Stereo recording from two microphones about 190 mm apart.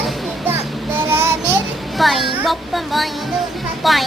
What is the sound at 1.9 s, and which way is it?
Speech, centre (ahead or behind).